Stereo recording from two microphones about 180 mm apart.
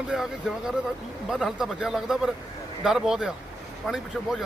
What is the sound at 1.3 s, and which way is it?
Speech, centre (ahead or behind).